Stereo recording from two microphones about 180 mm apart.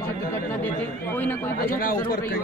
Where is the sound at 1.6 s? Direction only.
55° left (ahead or behind).